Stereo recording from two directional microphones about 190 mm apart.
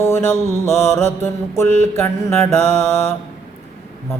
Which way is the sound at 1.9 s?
15° left (ahead or behind).